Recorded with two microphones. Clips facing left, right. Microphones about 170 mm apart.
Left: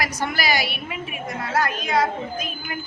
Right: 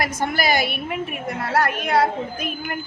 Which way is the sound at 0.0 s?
50° right (ahead or behind).